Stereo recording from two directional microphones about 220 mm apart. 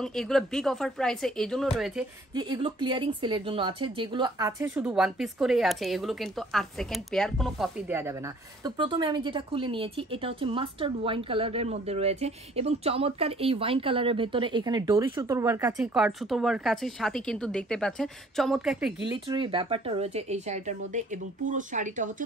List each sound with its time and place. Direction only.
0.0 s speech: centre (ahead or behind)
2.3 s speech: 20° right (ahead or behind)
8.6 s speech: 20° right (ahead or behind); by 18.9 s centre (ahead or behind)
19.0 s speech: 20° right (ahead or behind)